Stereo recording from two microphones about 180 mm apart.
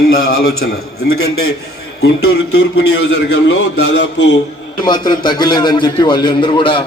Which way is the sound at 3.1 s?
70° left (ahead or behind).